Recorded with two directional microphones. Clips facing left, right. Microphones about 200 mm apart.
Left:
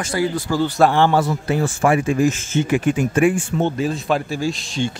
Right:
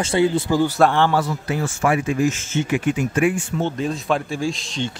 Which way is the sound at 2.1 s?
50° left (ahead or behind).